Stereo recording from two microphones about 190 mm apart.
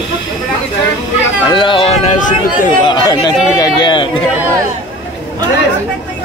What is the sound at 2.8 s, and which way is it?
Speech, 20° left (ahead or behind).